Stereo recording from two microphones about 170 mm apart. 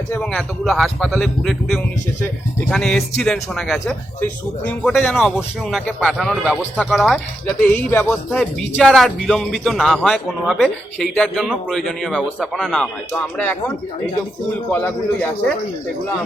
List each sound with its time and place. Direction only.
0.1 s a man's voice: 5° left (ahead or behind)
14.7 s speech: 10° left (ahead or behind)